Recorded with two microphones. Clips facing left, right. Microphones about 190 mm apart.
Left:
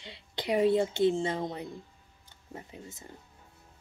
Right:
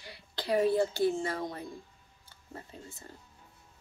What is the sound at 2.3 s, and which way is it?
Speech, 20° left (ahead or behind).